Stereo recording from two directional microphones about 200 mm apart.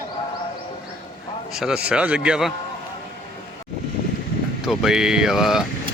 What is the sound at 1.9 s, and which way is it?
Speech, 5° right (ahead or behind).